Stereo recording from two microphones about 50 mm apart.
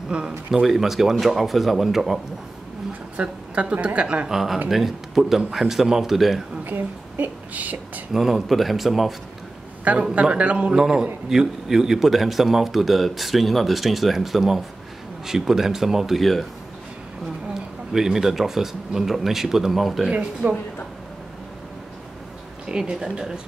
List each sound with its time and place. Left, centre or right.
0.5 s a man's voice: centre
3.2 s a woman's voice: right
4.3 s a man's voice: centre
6.6 s a woman's voice: right
8.1 s a man's voice: centre
9.9 s a woman's voice: right
10.7 s a man's voice: centre
17.6 s a man's voice: centre
20.1 s a woman's voice: right
22.7 s a man's voice: centre